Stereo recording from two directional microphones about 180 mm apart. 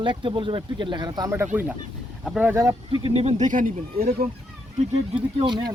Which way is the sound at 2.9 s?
30° right (ahead or behind).